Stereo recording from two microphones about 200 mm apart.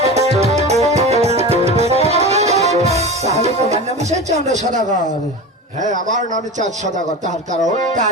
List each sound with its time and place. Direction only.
0.0 s music: 30° right (ahead or behind)
4.3 s speech: 35° right (ahead or behind)